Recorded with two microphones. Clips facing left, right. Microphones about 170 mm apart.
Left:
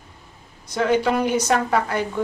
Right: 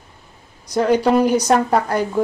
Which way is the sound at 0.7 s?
40° right (ahead or behind).